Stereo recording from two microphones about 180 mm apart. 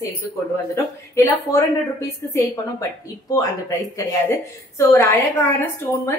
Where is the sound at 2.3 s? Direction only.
20° left (ahead or behind).